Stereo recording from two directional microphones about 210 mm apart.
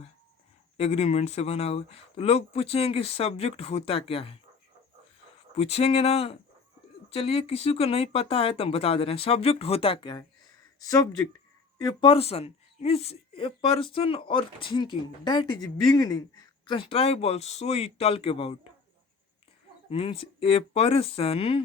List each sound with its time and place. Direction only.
0.8 s speech: 30° left (ahead or behind)
5.5 s speech: 30° left (ahead or behind)
19.9 s speech: 25° left (ahead or behind)